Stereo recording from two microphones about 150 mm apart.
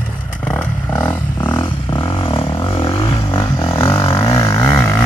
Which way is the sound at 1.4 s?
35° left (ahead or behind).